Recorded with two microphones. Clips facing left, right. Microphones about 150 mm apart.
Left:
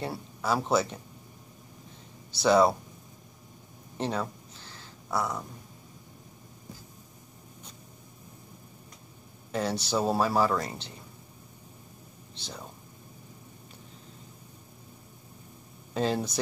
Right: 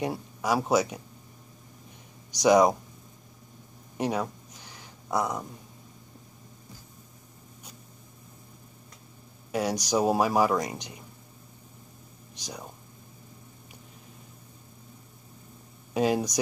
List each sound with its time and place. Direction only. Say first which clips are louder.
0.0 s speech: right 3 dB; 15° right (ahead or behind)
2.3 s speech: right 2 dB; 15° right (ahead or behind)
4.0 s a sound: right 2 dB; 10° right (ahead or behind)
9.5 s speech: right 2 dB; 10° right (ahead or behind)
12.4 s speech: right 2 dB; 15° right (ahead or behind)
15.9 s speech: right 3 dB; 10° right (ahead or behind)